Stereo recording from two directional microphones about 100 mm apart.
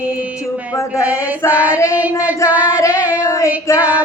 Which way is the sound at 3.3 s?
30° left (ahead or behind).